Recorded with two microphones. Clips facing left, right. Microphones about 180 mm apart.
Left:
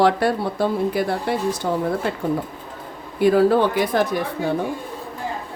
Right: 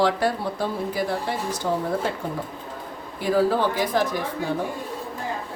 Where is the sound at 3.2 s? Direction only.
60° left (ahead or behind).